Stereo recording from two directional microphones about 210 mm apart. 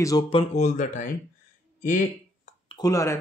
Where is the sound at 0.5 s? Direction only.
35° left (ahead or behind).